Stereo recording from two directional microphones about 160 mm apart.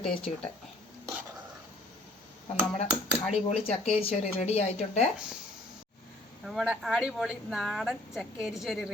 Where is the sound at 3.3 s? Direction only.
40° left (ahead or behind).